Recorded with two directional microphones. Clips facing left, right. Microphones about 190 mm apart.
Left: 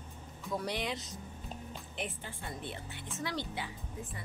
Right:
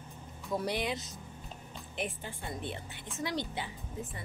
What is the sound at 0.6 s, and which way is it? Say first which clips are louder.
Speech: right 3 dB; 10° right (ahead or behind).